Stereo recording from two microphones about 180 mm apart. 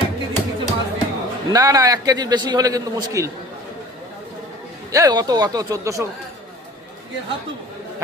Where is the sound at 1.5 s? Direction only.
20° right (ahead or behind).